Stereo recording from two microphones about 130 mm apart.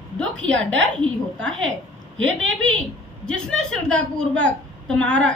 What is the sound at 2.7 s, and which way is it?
A woman's voice, 5° left (ahead or behind).